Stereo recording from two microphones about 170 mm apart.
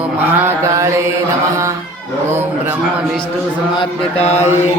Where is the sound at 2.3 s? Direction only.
10° right (ahead or behind).